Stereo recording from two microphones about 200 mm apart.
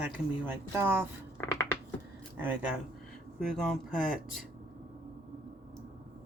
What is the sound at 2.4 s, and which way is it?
Speech, 5° right (ahead or behind).